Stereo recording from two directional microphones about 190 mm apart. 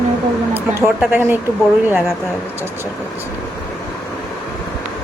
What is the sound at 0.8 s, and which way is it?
Speech, 10° right (ahead or behind).